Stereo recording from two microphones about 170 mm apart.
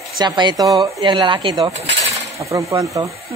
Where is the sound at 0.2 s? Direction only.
25° right (ahead or behind).